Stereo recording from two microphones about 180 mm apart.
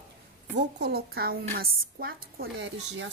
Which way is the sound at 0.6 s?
70° right (ahead or behind).